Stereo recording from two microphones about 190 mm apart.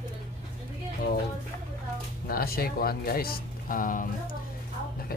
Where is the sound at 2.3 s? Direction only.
50° left (ahead or behind).